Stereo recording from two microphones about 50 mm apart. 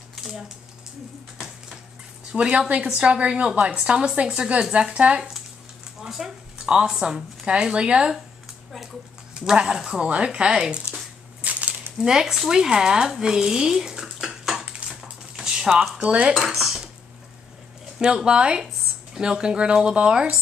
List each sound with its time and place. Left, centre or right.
0.1 s a sound: centre
2.3 s a woman's voice: centre
4.9 s a woman's voice: right
6.0 s a woman's voice: centre
9.7 s a woman's voice: centre
11.4 s a sound: right
12.0 s speech: centre
15.4 s a sound: centre
16.0 s a woman's voice: right
16.3 s dishes: centre
17.9 s speech: centre